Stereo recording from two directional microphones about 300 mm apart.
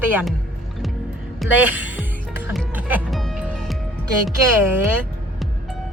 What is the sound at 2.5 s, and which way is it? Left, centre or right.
Music, centre.